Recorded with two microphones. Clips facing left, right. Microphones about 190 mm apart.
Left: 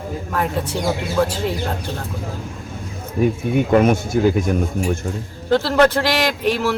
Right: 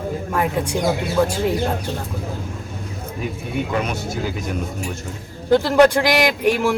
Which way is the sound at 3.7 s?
50° left (ahead or behind).